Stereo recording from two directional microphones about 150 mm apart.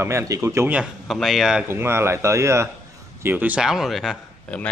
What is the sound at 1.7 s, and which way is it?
A man's voice, 15° right (ahead or behind).